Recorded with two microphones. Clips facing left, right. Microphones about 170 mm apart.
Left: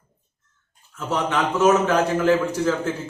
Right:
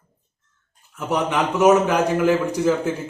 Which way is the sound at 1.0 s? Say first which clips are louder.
Right 2 dB; 15° right (ahead or behind).